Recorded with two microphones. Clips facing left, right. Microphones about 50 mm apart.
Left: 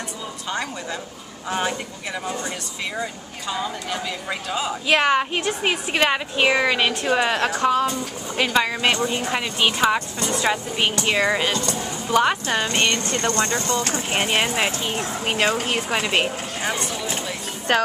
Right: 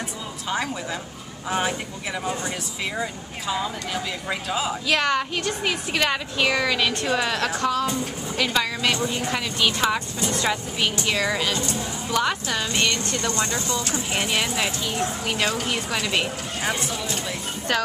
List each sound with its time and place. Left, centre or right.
1.5 s speech: centre
4.8 s a woman's voice: left
11.1 s a woman's voice: left
16.6 s speech: centre
16.9 s a woman's voice: left